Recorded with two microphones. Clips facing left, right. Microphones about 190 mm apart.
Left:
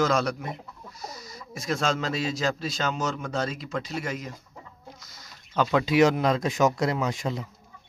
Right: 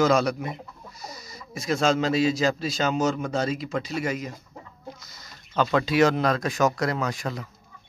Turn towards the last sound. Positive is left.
turn(degrees=25)  # may be behind; listen again after turning